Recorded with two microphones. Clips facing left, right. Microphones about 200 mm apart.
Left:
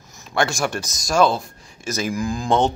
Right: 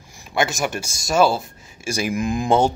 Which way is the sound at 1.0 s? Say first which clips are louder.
Even; 5° right (ahead or behind).